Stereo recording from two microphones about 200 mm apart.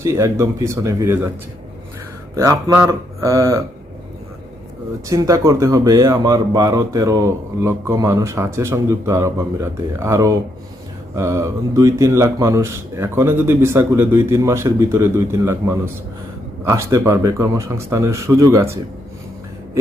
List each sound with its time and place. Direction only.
0.0 s speech: 15° right (ahead or behind)
2.3 s speech: 15° right (ahead or behind)
5.0 s speech: 15° right (ahead or behind)